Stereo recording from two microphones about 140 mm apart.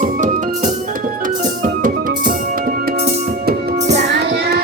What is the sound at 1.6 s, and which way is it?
Music, 75° right (ahead or behind).